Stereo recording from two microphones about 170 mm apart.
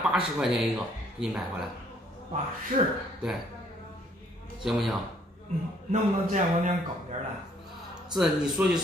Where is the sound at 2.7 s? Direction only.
45° right (ahead or behind).